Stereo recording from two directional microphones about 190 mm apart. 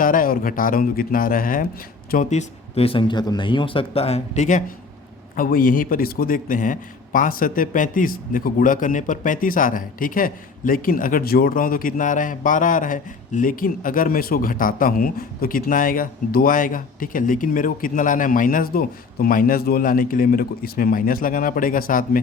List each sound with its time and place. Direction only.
0.0 s a man's voice: 45° left (ahead or behind)